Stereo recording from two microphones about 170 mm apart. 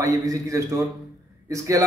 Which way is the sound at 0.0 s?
20° right (ahead or behind).